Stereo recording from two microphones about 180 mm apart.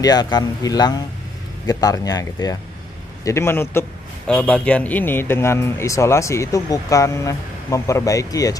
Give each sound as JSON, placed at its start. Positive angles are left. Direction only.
{"t": 0.0, "sound": "a man's voice", "side_deg": 20}